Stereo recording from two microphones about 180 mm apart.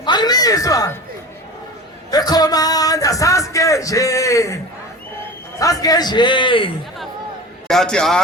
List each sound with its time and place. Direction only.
0.0 s a sound: 25° left (ahead or behind)
2.0 s a man's voice: 20° left (ahead or behind)
7.7 s a man's voice: 5° left (ahead or behind)